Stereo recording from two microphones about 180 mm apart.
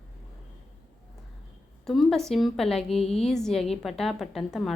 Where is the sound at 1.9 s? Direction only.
Centre (ahead or behind).